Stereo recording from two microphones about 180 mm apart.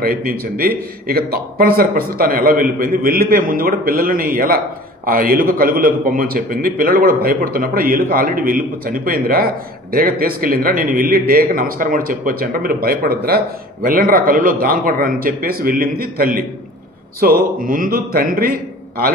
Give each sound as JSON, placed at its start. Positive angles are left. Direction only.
{"t": 0.0, "sound": "a man's voice", "side_deg": -55}